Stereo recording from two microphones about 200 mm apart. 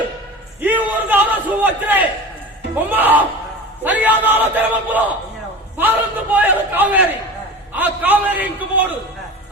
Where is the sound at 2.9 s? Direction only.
10° right (ahead or behind).